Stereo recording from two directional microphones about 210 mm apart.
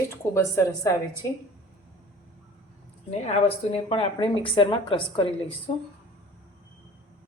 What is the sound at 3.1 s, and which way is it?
Speech, 30° left (ahead or behind).